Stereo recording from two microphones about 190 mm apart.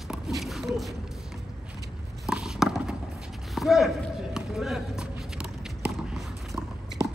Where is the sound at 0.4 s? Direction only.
Centre (ahead or behind).